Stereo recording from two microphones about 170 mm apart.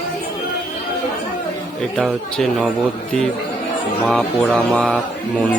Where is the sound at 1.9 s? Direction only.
Centre (ahead or behind).